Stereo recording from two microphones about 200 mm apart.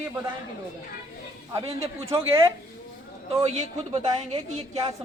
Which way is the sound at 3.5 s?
35° right (ahead or behind).